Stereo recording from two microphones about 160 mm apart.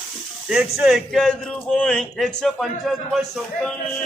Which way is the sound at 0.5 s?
Centre (ahead or behind).